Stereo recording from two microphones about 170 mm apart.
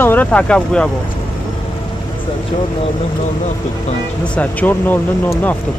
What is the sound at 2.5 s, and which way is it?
Speech, 35° left (ahead or behind).